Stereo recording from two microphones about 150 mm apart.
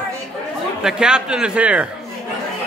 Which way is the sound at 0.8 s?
5° right (ahead or behind).